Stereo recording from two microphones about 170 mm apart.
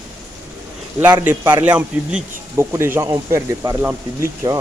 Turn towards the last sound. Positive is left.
turn(degrees=-15)  # may be behind; listen again after turning